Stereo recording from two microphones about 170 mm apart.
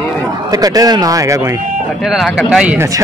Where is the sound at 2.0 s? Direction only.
Centre (ahead or behind).